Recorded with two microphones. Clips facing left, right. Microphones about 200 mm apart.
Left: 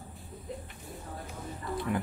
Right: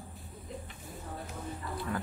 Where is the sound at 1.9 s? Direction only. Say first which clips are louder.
Left 4 dB; 15° left (ahead or behind).